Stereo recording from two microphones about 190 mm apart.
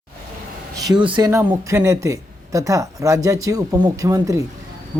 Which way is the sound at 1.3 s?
15° right (ahead or behind).